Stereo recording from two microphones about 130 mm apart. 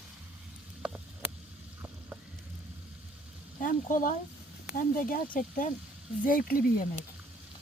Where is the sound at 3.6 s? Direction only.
90° left.